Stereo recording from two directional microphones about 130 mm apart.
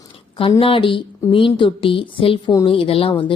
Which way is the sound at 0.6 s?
45° left (ahead or behind).